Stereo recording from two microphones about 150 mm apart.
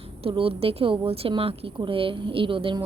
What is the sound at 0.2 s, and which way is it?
A woman's voice, 40° right (ahead or behind).